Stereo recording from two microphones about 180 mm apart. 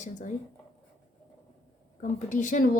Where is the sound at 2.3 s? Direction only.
45° left (ahead or behind).